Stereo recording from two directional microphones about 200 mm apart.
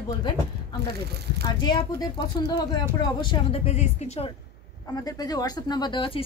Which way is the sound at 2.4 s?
20° left (ahead or behind).